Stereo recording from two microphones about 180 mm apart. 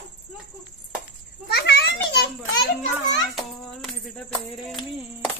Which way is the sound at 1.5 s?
65° left (ahead or behind).